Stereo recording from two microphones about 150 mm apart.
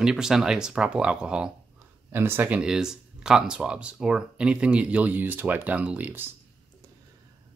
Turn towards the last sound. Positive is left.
turn(degrees=-10)  # may be behind; listen again after turning